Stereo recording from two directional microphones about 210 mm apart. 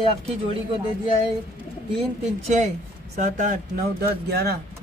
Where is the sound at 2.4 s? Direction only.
35° right (ahead or behind).